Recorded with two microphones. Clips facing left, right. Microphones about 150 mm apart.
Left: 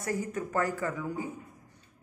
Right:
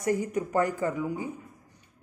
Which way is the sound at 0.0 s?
20° right (ahead or behind).